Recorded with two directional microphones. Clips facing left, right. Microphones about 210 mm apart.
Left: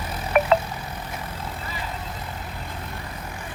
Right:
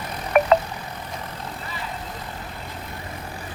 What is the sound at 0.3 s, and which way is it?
Vehicle, 40° right (ahead or behind).